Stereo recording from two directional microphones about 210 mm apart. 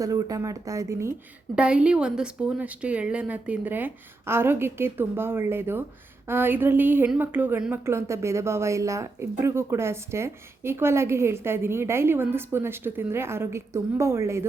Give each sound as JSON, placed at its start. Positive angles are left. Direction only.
{"t": 0.0, "sound": "a woman's voice", "side_deg": -15}